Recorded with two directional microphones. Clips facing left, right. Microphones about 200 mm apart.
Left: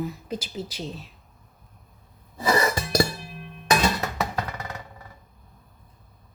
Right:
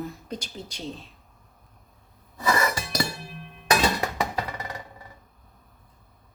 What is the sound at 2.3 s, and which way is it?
Music, 30° left (ahead or behind).